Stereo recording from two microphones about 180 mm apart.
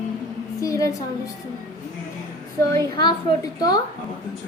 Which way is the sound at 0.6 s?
20° left (ahead or behind).